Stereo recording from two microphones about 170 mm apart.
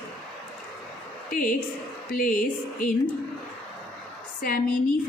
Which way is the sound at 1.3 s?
55° left (ahead or behind).